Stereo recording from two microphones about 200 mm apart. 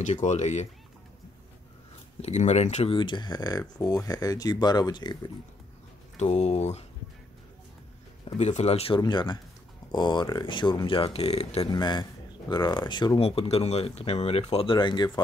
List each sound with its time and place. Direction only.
0.0 s speech: 35° left (ahead or behind)
2.2 s speech: 35° left (ahead or behind)
6.1 s speech: 35° left (ahead or behind)
8.4 s speech: 35° left (ahead or behind)